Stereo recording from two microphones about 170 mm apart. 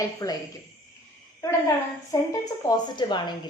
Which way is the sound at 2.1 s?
20° left (ahead or behind).